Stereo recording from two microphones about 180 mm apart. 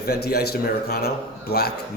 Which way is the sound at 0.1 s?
60° left (ahead or behind).